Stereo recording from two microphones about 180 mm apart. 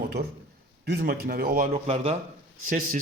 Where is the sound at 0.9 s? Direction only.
60° right (ahead or behind).